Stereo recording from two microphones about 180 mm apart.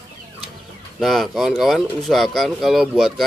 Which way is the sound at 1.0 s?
Centre (ahead or behind).